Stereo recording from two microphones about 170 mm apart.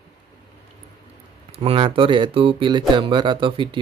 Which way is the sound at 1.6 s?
35° right (ahead or behind).